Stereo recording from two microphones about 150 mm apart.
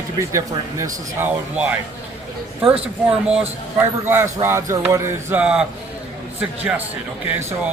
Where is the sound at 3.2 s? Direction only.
10° right (ahead or behind).